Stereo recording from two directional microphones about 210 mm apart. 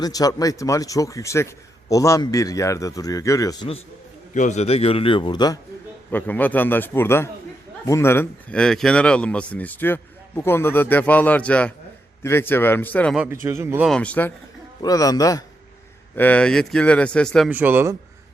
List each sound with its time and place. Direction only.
0.0 s a man's voice: 15° left (ahead or behind)
6.1 s speech: 10° left (ahead or behind)
13.1 s a man's voice: 10° right (ahead or behind)
13.8 s speech: 5° left (ahead or behind)
17.5 s a man's voice: 10° right (ahead or behind)